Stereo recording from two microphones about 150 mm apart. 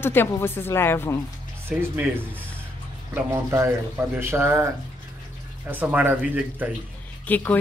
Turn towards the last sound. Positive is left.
turn(degrees=10)  # may be behind; listen again after turning